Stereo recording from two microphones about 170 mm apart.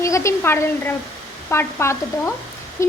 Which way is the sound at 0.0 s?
15° left (ahead or behind).